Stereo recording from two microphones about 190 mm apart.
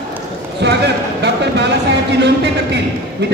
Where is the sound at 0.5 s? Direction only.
60° right (ahead or behind).